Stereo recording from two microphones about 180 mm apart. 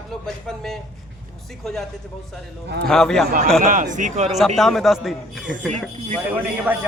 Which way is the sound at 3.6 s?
45° right (ahead or behind).